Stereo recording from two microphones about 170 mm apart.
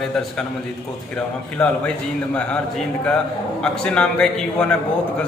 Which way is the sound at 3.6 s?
5° left (ahead or behind).